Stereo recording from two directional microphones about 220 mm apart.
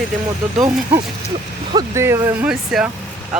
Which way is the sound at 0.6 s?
20° right (ahead or behind).